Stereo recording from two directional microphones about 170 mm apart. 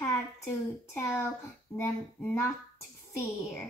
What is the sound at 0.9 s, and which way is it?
A woman's voice, 15° left (ahead or behind).